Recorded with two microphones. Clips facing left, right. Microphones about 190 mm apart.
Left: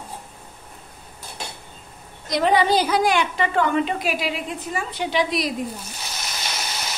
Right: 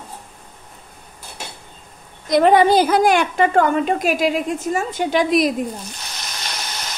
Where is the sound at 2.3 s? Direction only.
50° right (ahead or behind).